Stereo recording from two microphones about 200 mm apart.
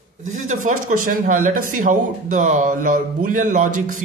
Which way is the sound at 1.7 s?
40° right (ahead or behind).